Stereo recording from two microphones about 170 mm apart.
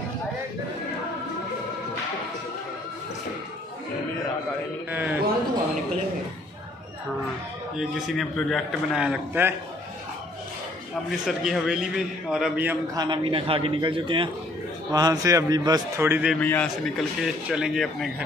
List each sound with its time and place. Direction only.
4.9 s a sound: 10° right (ahead or behind)
7.7 s a man's voice: centre (ahead or behind)
11.1 s a man's voice: centre (ahead or behind)
12.9 s a man's voice: 25° right (ahead or behind)
16.3 s a man's voice: 10° left (ahead or behind)